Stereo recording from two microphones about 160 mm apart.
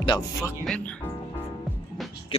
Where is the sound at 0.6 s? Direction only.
5° left (ahead or behind).